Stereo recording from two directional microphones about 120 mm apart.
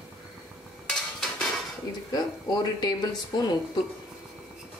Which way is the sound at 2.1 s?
35° left (ahead or behind).